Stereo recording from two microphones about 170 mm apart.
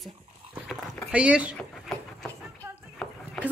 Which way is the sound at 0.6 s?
5° right (ahead or behind).